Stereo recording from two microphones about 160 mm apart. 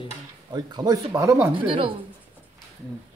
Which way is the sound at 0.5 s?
25° right (ahead or behind).